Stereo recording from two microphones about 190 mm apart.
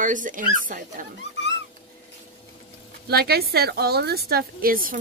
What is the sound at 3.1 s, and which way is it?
A woman's voice, 55° right (ahead or behind).